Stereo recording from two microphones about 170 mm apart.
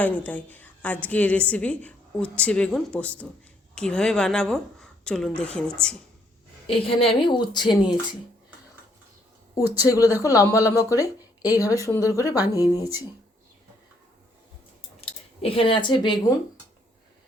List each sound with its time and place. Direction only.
0.0 s a woman's voice: 10° left (ahead or behind)
6.7 s a woman's voice: 35° left (ahead or behind)
9.6 s speech: 10° right (ahead or behind)
9.9 s a woman's voice: 20° left (ahead or behind)
15.4 s a woman's voice: 35° left (ahead or behind)